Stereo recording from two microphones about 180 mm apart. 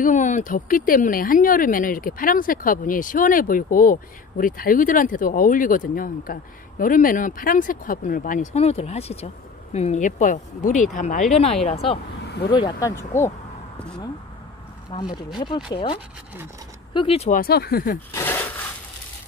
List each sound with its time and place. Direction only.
0.0 s speech: 45° left (ahead or behind); by 13.3 s 15° left (ahead or behind)
14.9 s speech: 25° left (ahead or behind)
17.3 s speech: 55° left (ahead or behind)
18.1 s speech: 10° left (ahead or behind)